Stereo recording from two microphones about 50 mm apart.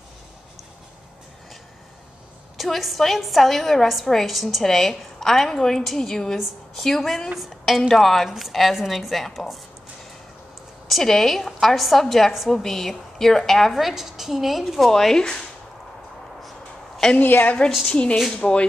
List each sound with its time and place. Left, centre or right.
2.5 s a woman's voice: centre
10.9 s a woman's voice: centre
13.7 s a woman's voice: centre
17.2 s speech: left
17.6 s a woman's voice: centre
18.3 s speech: left